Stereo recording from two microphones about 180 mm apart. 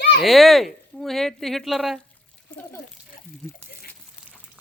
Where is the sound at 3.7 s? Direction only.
60° left (ahead or behind).